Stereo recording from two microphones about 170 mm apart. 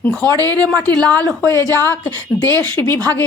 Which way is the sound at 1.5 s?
20° right (ahead or behind).